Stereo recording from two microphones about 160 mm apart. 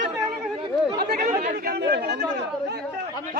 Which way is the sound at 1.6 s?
80° right.